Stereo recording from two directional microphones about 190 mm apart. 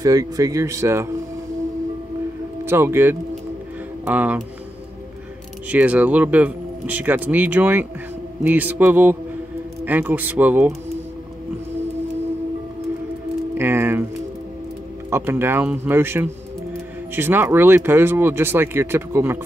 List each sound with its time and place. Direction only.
0.0 s speech: 20° right (ahead or behind)
2.6 s speech: 10° right (ahead or behind)
5.7 s speech: 10° right (ahead or behind)
13.6 s speech: 10° right (ahead or behind)
15.0 s speech: 10° right (ahead or behind)